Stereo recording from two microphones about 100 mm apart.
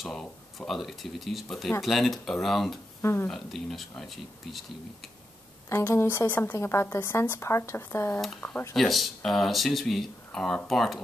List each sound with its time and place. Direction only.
0.0 s speech: 5° left (ahead or behind)
3.0 s speech: 25° left (ahead or behind)
3.3 s speech: 5° left (ahead or behind)
5.7 s a woman's voice: 25° left (ahead or behind)
8.2 s speech: centre (ahead or behind)